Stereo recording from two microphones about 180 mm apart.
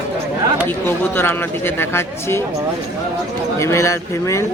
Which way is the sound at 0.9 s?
10° left (ahead or behind).